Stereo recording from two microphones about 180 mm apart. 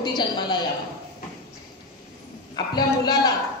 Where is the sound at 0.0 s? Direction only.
25° left (ahead or behind).